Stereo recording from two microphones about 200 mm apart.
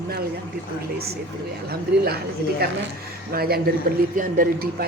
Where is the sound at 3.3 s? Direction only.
50° right (ahead or behind).